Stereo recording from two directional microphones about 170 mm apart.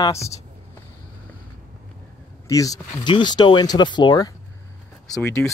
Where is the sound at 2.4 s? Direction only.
20° left (ahead or behind).